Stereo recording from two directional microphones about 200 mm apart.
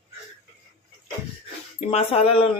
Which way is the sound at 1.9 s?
30° left (ahead or behind).